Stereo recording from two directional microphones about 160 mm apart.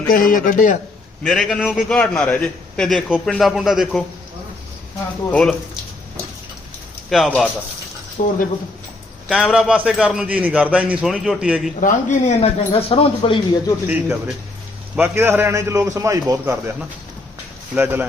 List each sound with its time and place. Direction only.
0.1 s a man's voice: 60° left (ahead or behind)
1.2 s a man's voice: 5° left (ahead or behind)
5.3 s speech: 5° left (ahead or behind)
7.1 s a man's voice: centre (ahead or behind)
8.2 s speech: 50° left (ahead or behind)
9.3 s a man's voice: centre (ahead or behind)
11.8 s speech: 50° left (ahead or behind)
12.5 s speech: 35° left (ahead or behind)
13.8 s a man's voice: 15° right (ahead or behind)
17.7 s a man's voice: 10° right (ahead or behind)